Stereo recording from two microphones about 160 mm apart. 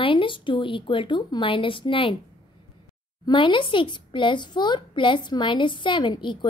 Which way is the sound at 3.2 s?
30° left (ahead or behind).